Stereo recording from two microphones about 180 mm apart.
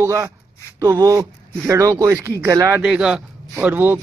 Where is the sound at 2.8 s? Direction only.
5° right (ahead or behind).